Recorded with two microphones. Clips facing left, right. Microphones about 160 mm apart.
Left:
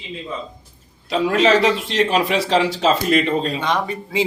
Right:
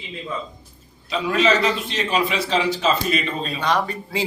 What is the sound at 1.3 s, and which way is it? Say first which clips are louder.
A man's voice: left 3 dB; 70° left (ahead or behind).